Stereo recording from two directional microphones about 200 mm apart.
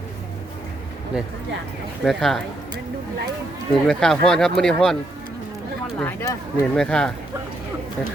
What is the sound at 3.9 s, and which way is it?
Speech, 5° left (ahead or behind).